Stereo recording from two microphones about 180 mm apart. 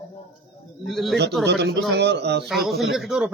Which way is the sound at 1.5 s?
75° right (ahead or behind).